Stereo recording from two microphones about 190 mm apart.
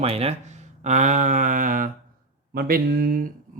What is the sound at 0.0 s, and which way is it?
Speech, 30° right (ahead or behind).